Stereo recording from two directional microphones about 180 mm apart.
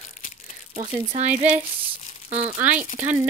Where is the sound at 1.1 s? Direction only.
35° right (ahead or behind).